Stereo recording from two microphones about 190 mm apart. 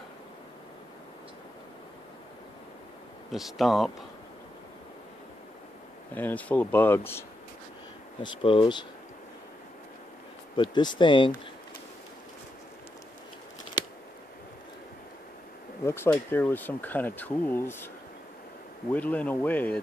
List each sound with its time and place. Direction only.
3.3 s speech: centre (ahead or behind)
6.1 s speech: 10° left (ahead or behind)
8.4 s speech: 25° left (ahead or behind)
10.5 s speech: 25° left (ahead or behind)
15.8 s speech: 10° left (ahead or behind)
18.9 s speech: 10° left (ahead or behind)